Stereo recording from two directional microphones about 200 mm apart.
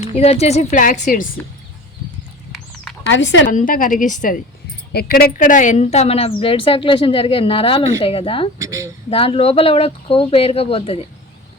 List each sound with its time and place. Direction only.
0.0 s a woman's voice: 30° left (ahead or behind)
3.1 s speech: 65° left (ahead or behind)
3.5 s a woman's voice: 40° left (ahead or behind)
4.9 s a woman's voice: 50° left (ahead or behind); by 8.4 s 25° left (ahead or behind)
8.5 s speech: 15° right (ahead or behind)
9.0 s a woman's voice: 30° left (ahead or behind)